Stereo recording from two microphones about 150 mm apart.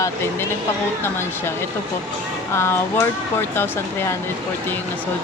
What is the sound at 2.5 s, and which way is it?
Speech, 15° left (ahead or behind).